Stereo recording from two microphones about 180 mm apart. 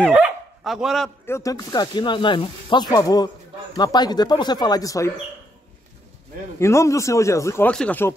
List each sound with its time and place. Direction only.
0.1 s speech: 5° right (ahead or behind)
1.2 s speech: 15° left (ahead or behind)
6.6 s speech: 15° left (ahead or behind)